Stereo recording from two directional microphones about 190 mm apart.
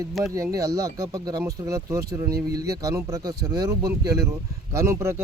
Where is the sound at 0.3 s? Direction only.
15° right (ahead or behind).